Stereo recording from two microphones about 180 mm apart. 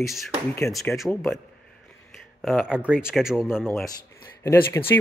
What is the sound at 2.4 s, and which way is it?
Speech, centre (ahead or behind).